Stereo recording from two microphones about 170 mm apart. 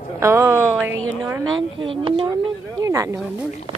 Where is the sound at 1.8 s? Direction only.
30° right (ahead or behind).